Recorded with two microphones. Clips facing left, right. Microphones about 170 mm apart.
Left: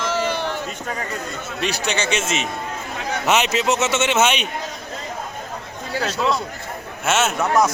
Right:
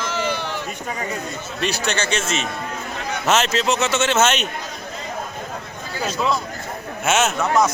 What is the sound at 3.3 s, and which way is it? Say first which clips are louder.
Speech: even; centre (ahead or behind).